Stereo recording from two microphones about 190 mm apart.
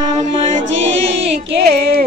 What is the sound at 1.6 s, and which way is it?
Speech, 50° right (ahead or behind).